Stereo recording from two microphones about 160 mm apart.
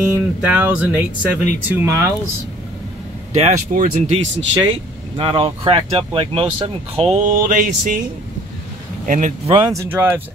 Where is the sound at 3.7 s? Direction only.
55° right (ahead or behind).